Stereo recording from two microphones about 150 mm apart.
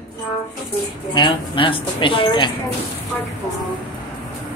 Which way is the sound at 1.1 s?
35° left (ahead or behind).